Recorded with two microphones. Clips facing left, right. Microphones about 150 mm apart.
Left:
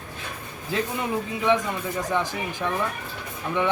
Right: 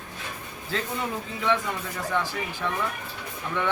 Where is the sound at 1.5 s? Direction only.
15° left (ahead or behind).